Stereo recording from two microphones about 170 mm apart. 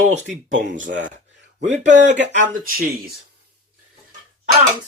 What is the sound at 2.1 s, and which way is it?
Speech, 90° right.